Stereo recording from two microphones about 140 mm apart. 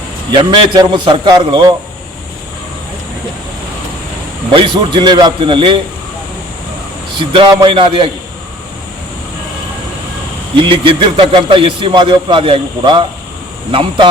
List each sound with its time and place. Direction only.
0.3 s speech: 35° right (ahead or behind)
4.5 s speech: 35° right (ahead or behind)
7.2 s speech: 30° right (ahead or behind)
10.5 s speech: 35° right (ahead or behind)